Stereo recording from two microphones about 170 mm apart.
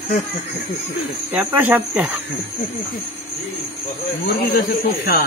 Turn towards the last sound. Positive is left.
turn(degrees=60)  # may be behind; listen again after turning